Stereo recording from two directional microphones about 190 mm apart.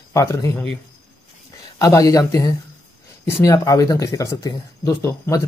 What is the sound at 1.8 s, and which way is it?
Speech, 15° left (ahead or behind).